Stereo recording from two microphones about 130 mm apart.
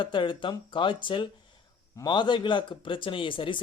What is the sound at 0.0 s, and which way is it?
Speech, 40° left (ahead or behind).